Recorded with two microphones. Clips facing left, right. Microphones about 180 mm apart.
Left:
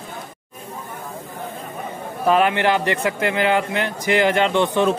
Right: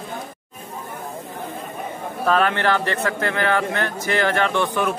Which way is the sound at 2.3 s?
15° left (ahead or behind).